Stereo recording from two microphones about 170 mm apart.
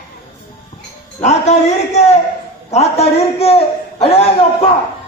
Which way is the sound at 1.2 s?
40° left (ahead or behind).